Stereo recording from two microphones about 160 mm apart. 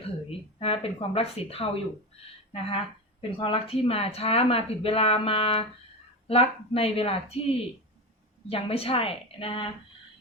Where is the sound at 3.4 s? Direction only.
35° left (ahead or behind).